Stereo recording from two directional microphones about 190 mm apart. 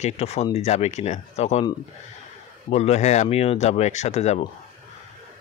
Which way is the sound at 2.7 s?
35° left (ahead or behind).